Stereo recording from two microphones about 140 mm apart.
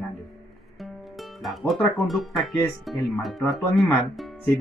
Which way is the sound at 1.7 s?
Centre (ahead or behind).